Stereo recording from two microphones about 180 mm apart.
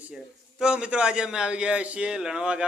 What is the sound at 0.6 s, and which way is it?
A man's voice, 5° right (ahead or behind).